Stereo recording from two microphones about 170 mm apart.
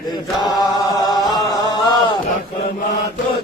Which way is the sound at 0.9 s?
25° left (ahead or behind).